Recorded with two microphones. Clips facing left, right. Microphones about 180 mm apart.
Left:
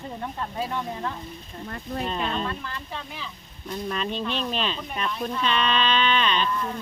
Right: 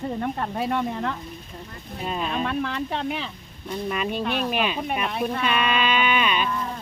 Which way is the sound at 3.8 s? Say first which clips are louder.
Right 3 dB; 10° right (ahead or behind).